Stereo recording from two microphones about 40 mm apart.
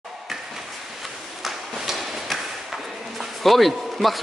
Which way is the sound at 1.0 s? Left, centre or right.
Centre.